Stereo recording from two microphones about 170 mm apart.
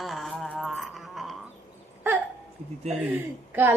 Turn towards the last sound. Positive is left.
turn(degrees=-15)  # may be behind; listen again after turning